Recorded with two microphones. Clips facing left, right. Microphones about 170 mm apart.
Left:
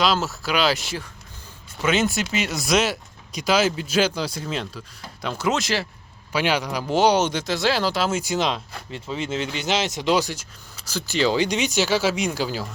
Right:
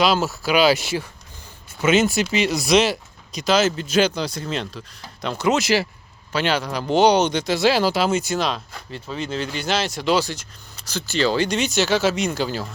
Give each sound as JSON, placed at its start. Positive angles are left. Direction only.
{"t": 0.0, "sound": "speech", "side_deg": 0}
{"t": 6.3, "sound": "speech", "side_deg": 10}
{"t": 8.2, "sound": "speech", "side_deg": 15}